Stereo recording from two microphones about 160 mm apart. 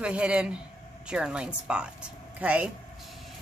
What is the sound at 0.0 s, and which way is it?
A woman's voice, 5° right (ahead or behind).